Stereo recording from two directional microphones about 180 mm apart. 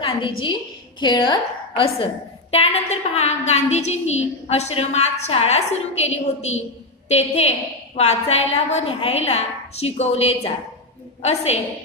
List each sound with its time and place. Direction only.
0.0 s a woman's voice: 30° left (ahead or behind)